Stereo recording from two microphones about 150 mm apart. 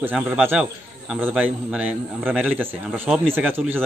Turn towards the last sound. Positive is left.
turn(degrees=-10)  # may be behind; listen again after turning